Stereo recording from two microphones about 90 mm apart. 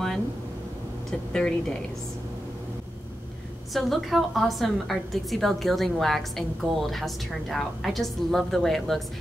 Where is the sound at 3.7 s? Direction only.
Centre (ahead or behind).